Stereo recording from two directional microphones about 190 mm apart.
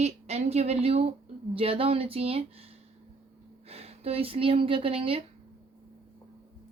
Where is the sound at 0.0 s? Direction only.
35° right (ahead or behind).